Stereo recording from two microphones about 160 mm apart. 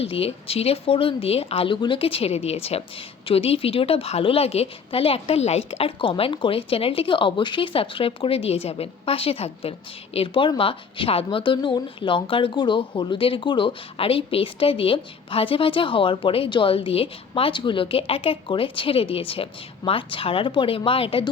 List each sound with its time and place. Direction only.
0.0 s speech: 35° left (ahead or behind)